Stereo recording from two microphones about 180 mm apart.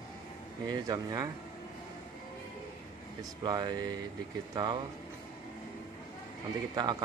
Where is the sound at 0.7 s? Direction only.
20° right (ahead or behind).